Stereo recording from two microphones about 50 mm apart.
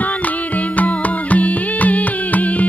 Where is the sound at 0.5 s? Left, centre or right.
Left.